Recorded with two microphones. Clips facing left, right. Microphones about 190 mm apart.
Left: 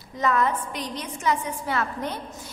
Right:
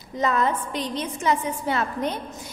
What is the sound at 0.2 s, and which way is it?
A woman's voice, 25° right (ahead or behind).